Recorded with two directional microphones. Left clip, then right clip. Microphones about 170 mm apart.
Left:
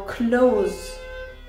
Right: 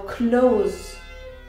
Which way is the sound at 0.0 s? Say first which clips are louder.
Even; 30° left (ahead or behind).